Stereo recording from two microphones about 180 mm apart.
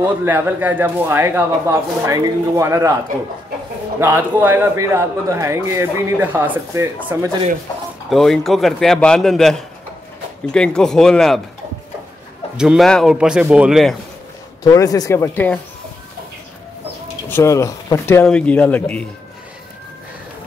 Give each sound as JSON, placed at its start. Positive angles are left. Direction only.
{"t": 0.2, "sound": "a man's voice", "side_deg": -10}
{"t": 4.0, "sound": "a man's voice", "side_deg": -10}
{"t": 8.1, "sound": "a man's voice", "side_deg": 0}
{"t": 12.5, "sound": "a man's voice", "side_deg": 0}
{"t": 14.6, "sound": "speech", "side_deg": 20}
{"t": 17.3, "sound": "speech", "side_deg": 15}